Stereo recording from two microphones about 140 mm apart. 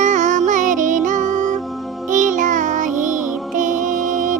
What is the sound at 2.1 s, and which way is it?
Music, 65° right (ahead or behind).